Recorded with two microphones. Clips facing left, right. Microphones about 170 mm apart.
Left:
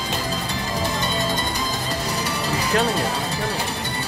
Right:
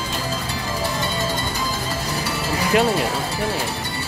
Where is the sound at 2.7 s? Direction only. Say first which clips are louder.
Right 4 dB; 15° right (ahead or behind).